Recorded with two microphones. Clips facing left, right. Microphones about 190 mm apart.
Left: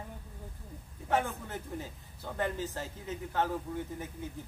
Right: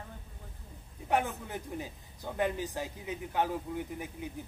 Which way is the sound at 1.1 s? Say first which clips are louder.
Right 1 dB; 15° right (ahead or behind).